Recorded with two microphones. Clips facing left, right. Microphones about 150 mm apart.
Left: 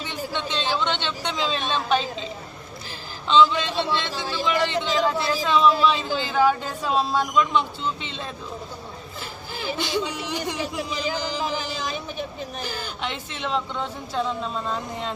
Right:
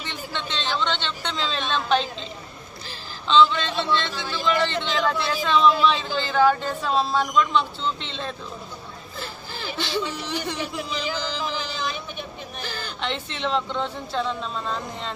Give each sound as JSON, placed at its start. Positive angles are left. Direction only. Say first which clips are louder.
{"t": 0.1, "sound": "speech", "louder": "left 3 dB", "side_deg": 10}
{"t": 3.2, "sound": "speech", "louder": "even", "side_deg": 10}
{"t": 9.6, "sound": "speech", "louder": "left 2 dB", "side_deg": 15}
{"t": 11.4, "sound": "a sound", "louder": "left 1 dB", "side_deg": 45}
{"t": 12.6, "sound": "speech", "louder": "right 3 dB", "side_deg": 5}